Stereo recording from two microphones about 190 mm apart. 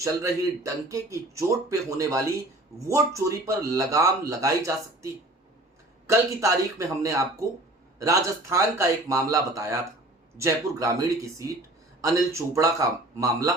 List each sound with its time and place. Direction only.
0.0 s speech: 15° right (ahead or behind)
6.1 s speech: 15° right (ahead or behind)